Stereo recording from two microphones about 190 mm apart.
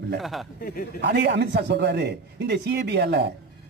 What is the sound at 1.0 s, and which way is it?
A man's voice, 65° right (ahead or behind).